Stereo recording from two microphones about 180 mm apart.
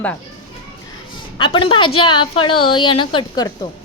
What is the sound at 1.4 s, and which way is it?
A woman's voice, 30° left (ahead or behind).